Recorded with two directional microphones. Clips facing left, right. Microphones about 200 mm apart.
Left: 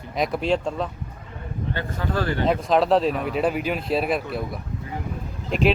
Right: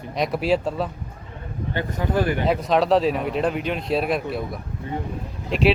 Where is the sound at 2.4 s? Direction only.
Centre (ahead or behind).